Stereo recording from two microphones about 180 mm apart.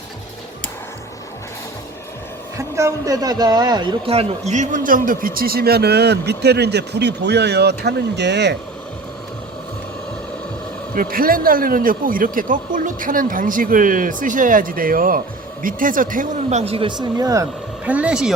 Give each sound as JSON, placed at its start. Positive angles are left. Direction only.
{"t": 2.6, "sound": "speech", "side_deg": -15}
{"t": 10.9, "sound": "speech", "side_deg": -55}
{"t": 17.8, "sound": "speech", "side_deg": -5}